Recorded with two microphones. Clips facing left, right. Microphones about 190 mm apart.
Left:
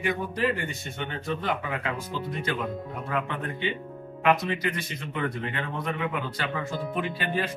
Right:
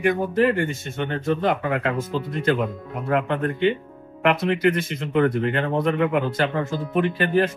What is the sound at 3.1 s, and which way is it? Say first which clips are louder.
A man's voice: right 9 dB; 60° right (ahead or behind).